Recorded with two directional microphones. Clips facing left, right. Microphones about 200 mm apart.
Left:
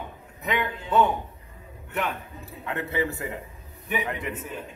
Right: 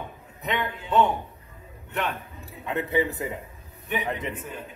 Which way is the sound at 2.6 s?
20° right (ahead or behind).